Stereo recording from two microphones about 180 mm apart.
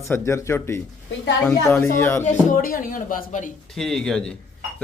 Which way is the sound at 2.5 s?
50° left (ahead or behind).